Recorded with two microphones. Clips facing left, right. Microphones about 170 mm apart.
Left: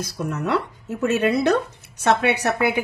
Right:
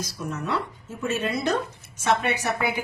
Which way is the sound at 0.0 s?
65° left (ahead or behind).